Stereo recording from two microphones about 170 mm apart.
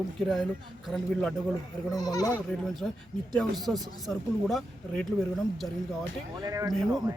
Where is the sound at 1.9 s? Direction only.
20° left (ahead or behind).